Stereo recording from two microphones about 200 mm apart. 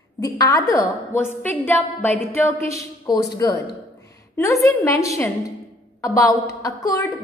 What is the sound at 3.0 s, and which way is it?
Speech, 20° left (ahead or behind).